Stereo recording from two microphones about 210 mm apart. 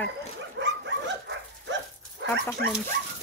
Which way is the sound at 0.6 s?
60° right (ahead or behind).